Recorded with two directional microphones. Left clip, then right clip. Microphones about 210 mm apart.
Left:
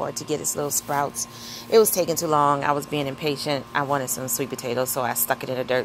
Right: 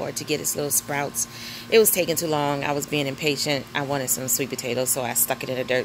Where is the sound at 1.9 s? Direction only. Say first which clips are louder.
Even; 30° left (ahead or behind).